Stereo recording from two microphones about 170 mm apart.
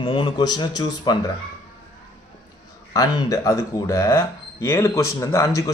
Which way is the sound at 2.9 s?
20° left (ahead or behind).